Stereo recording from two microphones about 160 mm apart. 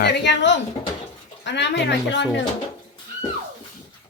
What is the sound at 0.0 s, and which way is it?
A woman's voice, 90° left.